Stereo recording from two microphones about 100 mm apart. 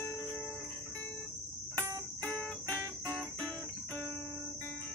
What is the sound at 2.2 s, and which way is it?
Music, 10° left (ahead or behind).